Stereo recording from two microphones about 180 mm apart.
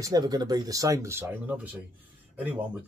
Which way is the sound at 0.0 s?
20° right (ahead or behind).